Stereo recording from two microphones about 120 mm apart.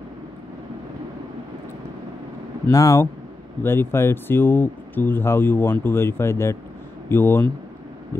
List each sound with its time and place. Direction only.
2.7 s speech: 25° left (ahead or behind)